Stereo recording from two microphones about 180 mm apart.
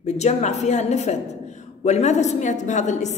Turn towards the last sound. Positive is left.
turn(degrees=40)  # may be behind; listen again after turning